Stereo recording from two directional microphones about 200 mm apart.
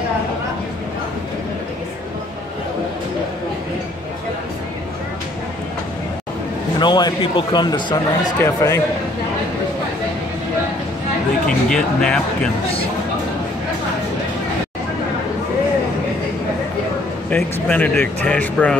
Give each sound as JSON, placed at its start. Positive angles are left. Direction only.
{"t": 6.8, "sound": "speech", "side_deg": 20}
{"t": 11.4, "sound": "speech", "side_deg": 5}
{"t": 17.3, "sound": "speech", "side_deg": 5}